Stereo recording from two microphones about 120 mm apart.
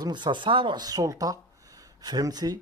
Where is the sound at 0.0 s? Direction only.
40° right (ahead or behind).